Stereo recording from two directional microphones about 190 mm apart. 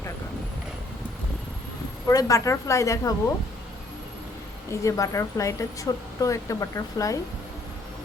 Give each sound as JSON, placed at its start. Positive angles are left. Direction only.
{"t": 2.0, "sound": "speech", "side_deg": 15}
{"t": 4.7, "sound": "speech", "side_deg": 15}